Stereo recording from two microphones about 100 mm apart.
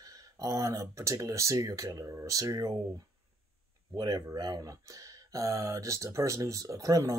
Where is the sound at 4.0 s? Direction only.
45° right (ahead or behind).